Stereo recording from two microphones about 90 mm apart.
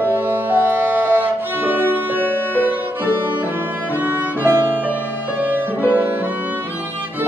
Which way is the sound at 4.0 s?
25° right (ahead or behind).